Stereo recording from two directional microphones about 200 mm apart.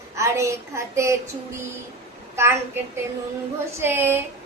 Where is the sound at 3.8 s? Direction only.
10° right (ahead or behind).